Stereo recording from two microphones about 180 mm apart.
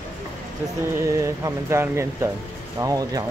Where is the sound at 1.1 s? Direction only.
15° right (ahead or behind).